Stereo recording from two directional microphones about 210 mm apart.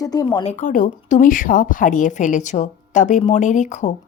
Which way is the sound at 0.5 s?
40° left (ahead or behind).